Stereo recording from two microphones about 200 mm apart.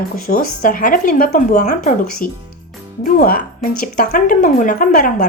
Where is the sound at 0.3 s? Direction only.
40° left (ahead or behind).